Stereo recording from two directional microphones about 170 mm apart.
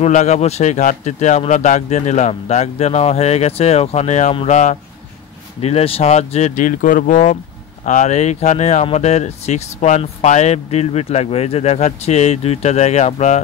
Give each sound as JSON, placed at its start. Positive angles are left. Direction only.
{"t": 0.0, "sound": "speech", "side_deg": 45}